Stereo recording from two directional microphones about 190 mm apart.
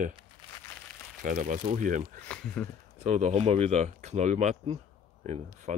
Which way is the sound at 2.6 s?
5° left (ahead or behind).